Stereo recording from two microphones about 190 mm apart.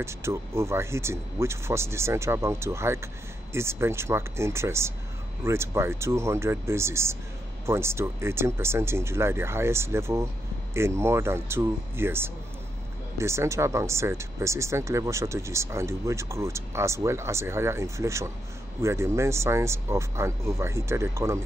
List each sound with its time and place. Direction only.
0.0 s speech: 15° right (ahead or behind)